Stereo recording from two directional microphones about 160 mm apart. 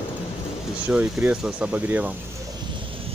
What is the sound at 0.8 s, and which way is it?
Speech, 10° right (ahead or behind).